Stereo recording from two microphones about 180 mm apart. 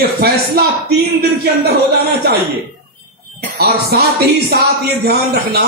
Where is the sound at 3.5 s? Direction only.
60° right (ahead or behind).